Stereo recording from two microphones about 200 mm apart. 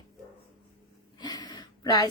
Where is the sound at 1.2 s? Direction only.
20° left (ahead or behind).